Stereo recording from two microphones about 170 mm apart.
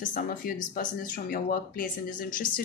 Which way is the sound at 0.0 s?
50° left (ahead or behind).